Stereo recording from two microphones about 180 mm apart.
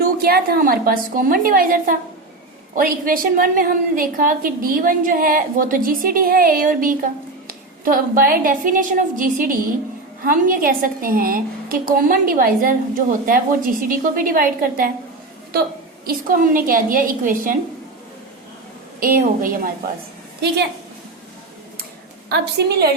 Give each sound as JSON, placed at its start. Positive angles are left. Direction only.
{"t": 0.0, "sound": "a woman's voice", "side_deg": -60}
{"t": 16.0, "sound": "a woman's voice", "side_deg": -50}
{"t": 18.9, "sound": "a woman's voice", "side_deg": -50}
{"t": 22.3, "sound": "a woman's voice", "side_deg": -65}